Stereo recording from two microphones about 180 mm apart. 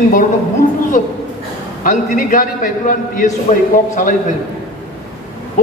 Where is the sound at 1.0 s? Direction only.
45° left (ahead or behind).